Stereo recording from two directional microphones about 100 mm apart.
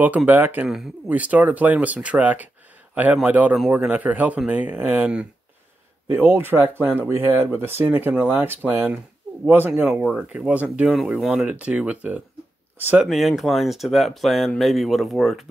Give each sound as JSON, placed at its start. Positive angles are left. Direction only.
{"t": 0.3, "sound": "speech", "side_deg": -20}
{"t": 0.7, "sound": "speech", "side_deg": -5}
{"t": 1.1, "sound": "speech", "side_deg": -15}
{"t": 13.0, "sound": "speech", "side_deg": 0}